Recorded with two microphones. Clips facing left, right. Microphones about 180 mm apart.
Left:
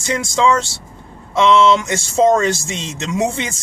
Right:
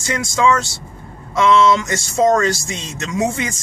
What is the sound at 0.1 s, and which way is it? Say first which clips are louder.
Speech: left 1 dB; 25° left (ahead or behind).